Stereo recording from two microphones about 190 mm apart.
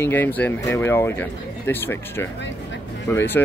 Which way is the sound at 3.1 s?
10° left (ahead or behind).